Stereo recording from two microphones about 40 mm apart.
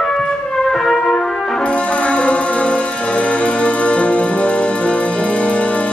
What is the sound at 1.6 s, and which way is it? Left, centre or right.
Music, left.